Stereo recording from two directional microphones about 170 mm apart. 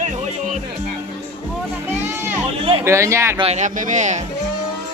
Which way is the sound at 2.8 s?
15° right (ahead or behind).